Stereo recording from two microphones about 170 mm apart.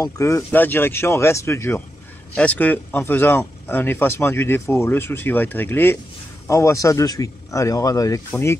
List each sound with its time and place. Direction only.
0.0 s speech: 15° left (ahead or behind)